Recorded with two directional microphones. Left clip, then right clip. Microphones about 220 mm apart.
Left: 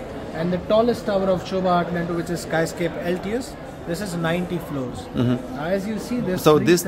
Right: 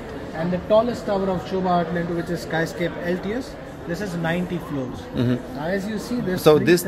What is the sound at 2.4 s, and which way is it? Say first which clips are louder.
Speech: left 3 dB; 5° left (ahead or behind).